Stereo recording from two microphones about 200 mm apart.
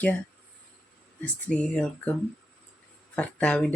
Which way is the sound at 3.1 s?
5° left (ahead or behind).